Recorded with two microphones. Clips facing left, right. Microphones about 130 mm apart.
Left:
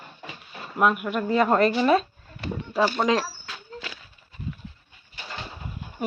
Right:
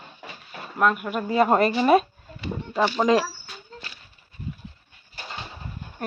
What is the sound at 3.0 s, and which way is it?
Speech, 5° right (ahead or behind).